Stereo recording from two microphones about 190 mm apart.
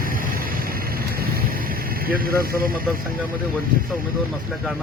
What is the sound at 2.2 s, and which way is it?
Speech, 50° right (ahead or behind).